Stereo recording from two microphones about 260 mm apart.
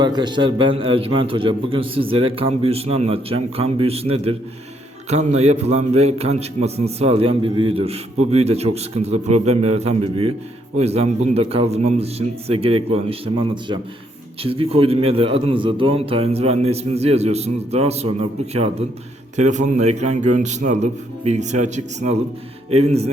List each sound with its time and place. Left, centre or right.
0.0 s a man's voice: centre
19.4 s a man's voice: right